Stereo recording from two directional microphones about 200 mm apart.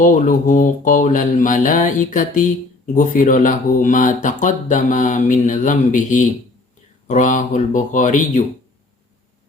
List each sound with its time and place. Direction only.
0.0 s speech: 40° left (ahead or behind)